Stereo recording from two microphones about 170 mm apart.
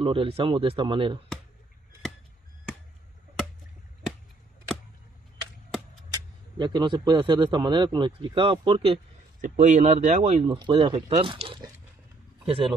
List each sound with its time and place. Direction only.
0.0 s speech: 30° right (ahead or behind)
6.1 s a man's voice: 25° right (ahead or behind)
9.4 s speech: 45° right (ahead or behind)